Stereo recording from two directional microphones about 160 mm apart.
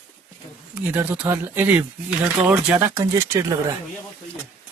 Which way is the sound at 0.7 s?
15° right (ahead or behind).